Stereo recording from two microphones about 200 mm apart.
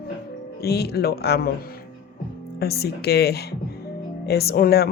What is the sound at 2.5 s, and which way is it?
Speech, 50° left (ahead or behind).